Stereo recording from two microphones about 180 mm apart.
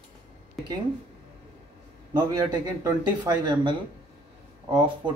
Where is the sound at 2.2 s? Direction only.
15° right (ahead or behind).